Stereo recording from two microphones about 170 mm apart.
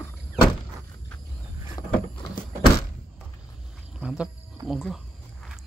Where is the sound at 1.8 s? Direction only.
20° left (ahead or behind).